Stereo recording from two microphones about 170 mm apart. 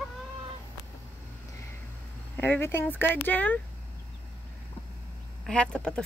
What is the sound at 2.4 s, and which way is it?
Speech, 15° left (ahead or behind).